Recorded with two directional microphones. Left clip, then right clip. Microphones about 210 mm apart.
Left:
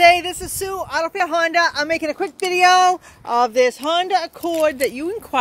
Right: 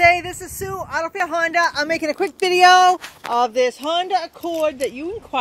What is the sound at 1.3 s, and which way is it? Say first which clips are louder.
Speech: left 1 dB; 15° left (ahead or behind).